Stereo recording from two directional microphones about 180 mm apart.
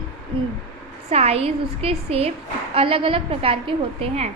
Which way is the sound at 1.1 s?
35° right (ahead or behind).